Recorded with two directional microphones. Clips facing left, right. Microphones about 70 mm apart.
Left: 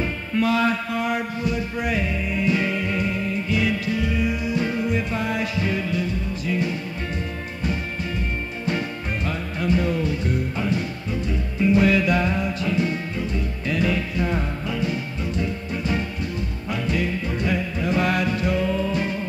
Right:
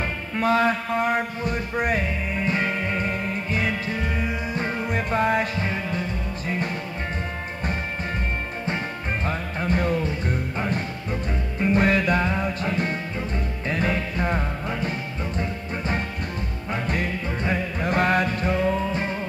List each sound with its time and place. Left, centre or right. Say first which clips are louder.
0.0 s music: left 2 dB; right
8.6 s music: left 3 dB; right
17.4 s music: even; right
17.8 s music: right 1 dB; right